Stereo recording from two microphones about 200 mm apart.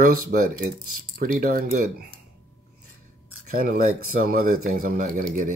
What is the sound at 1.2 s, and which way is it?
Speech, 45° right (ahead or behind).